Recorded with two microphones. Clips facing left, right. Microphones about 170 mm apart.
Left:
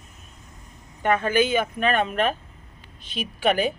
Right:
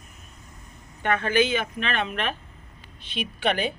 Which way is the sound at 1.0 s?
45° left (ahead or behind).